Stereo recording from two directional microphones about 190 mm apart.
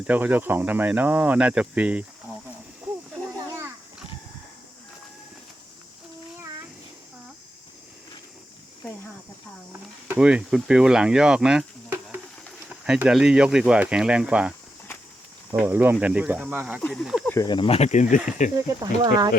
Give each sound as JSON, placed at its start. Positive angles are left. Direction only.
{"t": 0.1, "sound": "speech", "side_deg": -10}
{"t": 3.2, "sound": "a sound", "side_deg": -15}
{"t": 6.3, "sound": "child singing", "side_deg": -15}
{"t": 10.1, "sound": "speech", "side_deg": -5}
{"t": 15.5, "sound": "speech", "side_deg": -10}
{"t": 16.8, "sound": "speech", "side_deg": 0}
{"t": 17.2, "sound": "speech", "side_deg": 15}
{"t": 18.8, "sound": "speech", "side_deg": -20}